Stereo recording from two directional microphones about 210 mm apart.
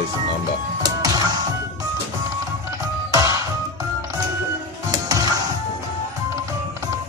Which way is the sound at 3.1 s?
15° right (ahead or behind).